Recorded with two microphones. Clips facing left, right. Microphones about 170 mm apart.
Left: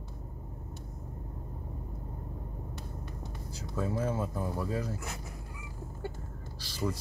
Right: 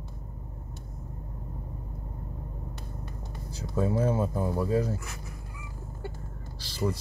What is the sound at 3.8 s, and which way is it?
Speech, 25° right (ahead or behind).